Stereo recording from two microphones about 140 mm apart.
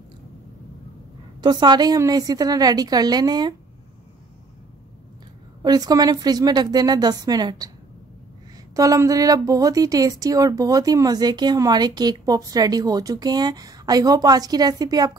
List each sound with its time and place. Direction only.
1.4 s a woman's voice: 30° right (ahead or behind)
5.6 s a woman's voice: 30° right (ahead or behind)
8.7 s a woman's voice: 25° right (ahead or behind)